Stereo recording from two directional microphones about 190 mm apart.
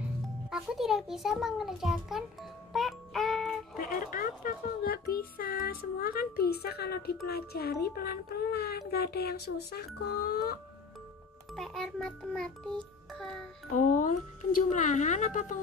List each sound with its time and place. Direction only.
0.5 s a child's voice: centre (ahead or behind)
2.7 s music: centre (ahead or behind)
3.7 s a child's voice: 45° left (ahead or behind)
11.5 s a child's voice: centre (ahead or behind)
13.7 s speech: 40° left (ahead or behind)